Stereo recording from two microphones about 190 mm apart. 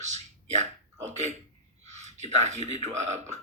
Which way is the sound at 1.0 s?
35° right (ahead or behind).